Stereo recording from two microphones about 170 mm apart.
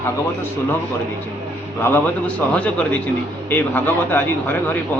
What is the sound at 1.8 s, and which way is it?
A man's voice, 10° left (ahead or behind).